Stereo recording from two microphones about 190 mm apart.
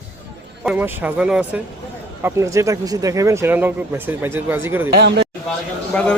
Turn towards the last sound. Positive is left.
turn(degrees=5)  # may be behind; listen again after turning